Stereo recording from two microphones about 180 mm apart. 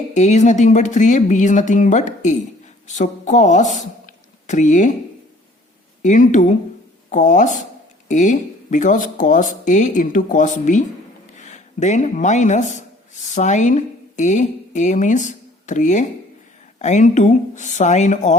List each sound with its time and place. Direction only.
0.1 s speech: 40° left (ahead or behind)
6.0 s speech: 45° left (ahead or behind)